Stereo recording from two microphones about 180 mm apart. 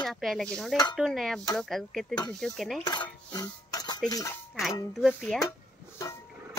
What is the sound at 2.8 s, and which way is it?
Cutlery, 20° left (ahead or behind).